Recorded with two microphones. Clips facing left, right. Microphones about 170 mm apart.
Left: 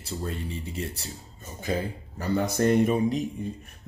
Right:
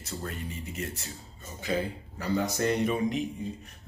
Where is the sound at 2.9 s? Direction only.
35° left (ahead or behind).